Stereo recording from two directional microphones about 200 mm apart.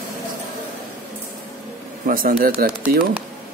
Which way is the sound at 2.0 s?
45° right (ahead or behind).